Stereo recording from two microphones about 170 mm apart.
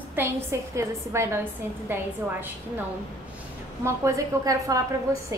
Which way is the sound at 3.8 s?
20° right (ahead or behind).